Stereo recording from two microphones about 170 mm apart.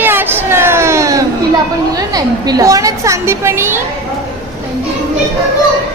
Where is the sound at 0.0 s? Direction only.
10° right (ahead or behind).